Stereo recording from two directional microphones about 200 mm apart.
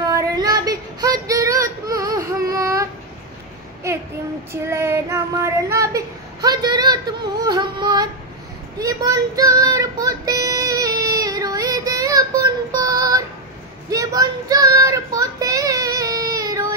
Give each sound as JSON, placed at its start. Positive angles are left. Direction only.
{"t": 0.0, "sound": "child singing", "side_deg": -20}
{"t": 3.9, "sound": "a sound", "side_deg": -15}
{"t": 4.5, "sound": "child singing", "side_deg": -10}